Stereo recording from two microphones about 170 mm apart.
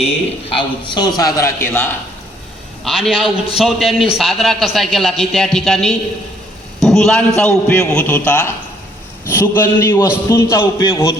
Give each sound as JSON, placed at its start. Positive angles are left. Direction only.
{"t": 0.5, "sound": "a man's voice", "side_deg": 25}
{"t": 2.8, "sound": "a man's voice", "side_deg": 0}